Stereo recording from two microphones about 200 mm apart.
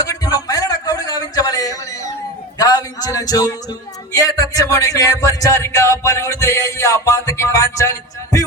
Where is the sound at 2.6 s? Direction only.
20° left (ahead or behind).